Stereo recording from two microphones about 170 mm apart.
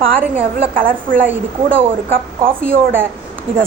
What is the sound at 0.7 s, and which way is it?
Speech, 55° right (ahead or behind).